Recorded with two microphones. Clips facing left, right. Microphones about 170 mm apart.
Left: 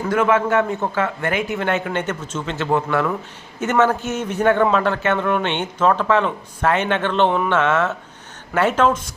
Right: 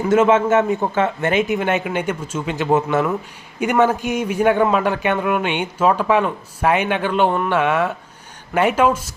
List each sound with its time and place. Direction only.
0.1 s a man's voice: 25° right (ahead or behind)